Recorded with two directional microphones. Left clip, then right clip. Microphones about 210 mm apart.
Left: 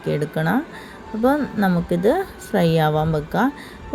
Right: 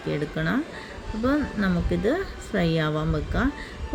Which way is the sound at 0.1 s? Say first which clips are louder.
Left 6 dB; 15° left (ahead or behind).